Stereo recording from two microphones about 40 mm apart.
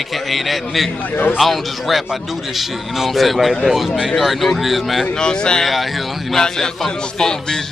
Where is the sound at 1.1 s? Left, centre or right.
Left.